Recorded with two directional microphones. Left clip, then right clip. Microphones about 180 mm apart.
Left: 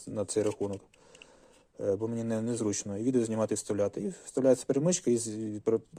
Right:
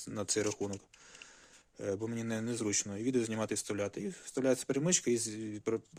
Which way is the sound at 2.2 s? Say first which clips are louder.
Left 5 dB; 15° right (ahead or behind).